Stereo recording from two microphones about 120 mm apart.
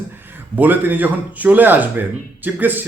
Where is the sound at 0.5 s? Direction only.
15° right (ahead or behind).